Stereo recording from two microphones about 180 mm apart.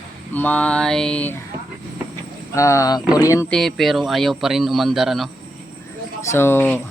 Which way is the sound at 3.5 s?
Centre (ahead or behind).